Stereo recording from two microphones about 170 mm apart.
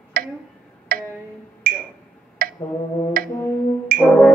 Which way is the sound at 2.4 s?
55° right (ahead or behind).